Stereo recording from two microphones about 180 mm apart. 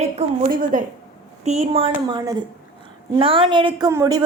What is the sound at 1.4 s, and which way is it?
A woman's voice, 40° right (ahead or behind).